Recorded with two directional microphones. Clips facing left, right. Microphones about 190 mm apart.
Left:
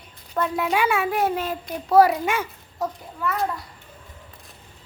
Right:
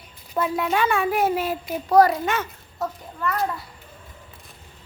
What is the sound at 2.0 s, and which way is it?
A child's voice, 10° left (ahead or behind).